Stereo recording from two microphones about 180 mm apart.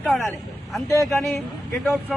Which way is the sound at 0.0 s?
Centre (ahead or behind).